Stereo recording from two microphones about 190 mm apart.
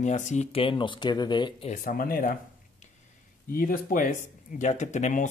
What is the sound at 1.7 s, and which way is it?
Speech, 50° left (ahead or behind).